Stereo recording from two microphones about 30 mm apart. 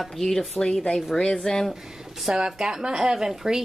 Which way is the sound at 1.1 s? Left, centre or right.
Left.